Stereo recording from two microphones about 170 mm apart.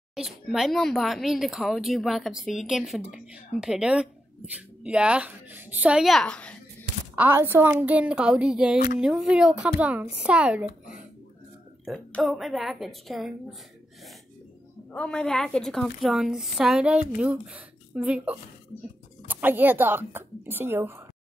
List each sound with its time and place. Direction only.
0.1 s speech: centre (ahead or behind)
7.2 s speech: 10° right (ahead or behind)
8.7 s speech: 55° left (ahead or behind)
9.0 s speech: 5° right (ahead or behind)
11.8 s speech: centre (ahead or behind)
14.9 s speech: 5° left (ahead or behind); by 20.9 s 15° right (ahead or behind)